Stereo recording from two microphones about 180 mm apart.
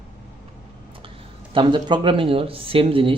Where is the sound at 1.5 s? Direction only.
25° right (ahead or behind).